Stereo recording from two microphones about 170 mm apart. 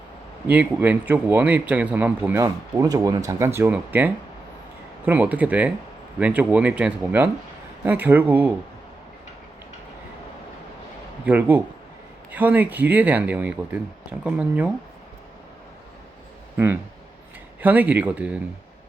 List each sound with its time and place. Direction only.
0.4 s speech: 10° right (ahead or behind)
2.4 s speech: 20° right (ahead or behind)
11.3 s speech: 10° right (ahead or behind)
17.6 s speech: 10° right (ahead or behind)